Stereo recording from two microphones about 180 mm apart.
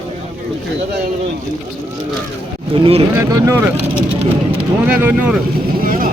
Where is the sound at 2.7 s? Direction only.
30° right (ahead or behind).